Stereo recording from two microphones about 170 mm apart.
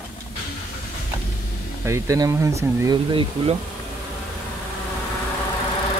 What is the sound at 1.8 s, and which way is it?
Speech, 20° right (ahead or behind).